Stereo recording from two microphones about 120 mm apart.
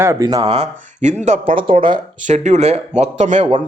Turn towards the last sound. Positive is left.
turn(degrees=-70)  # may be behind; listen again after turning